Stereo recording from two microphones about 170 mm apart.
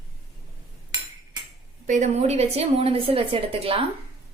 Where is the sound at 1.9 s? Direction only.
45° right (ahead or behind).